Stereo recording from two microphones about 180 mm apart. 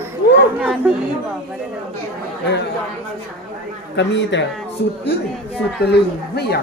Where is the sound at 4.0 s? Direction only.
80° left.